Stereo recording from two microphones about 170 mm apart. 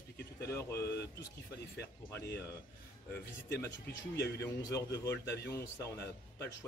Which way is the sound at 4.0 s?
80° left.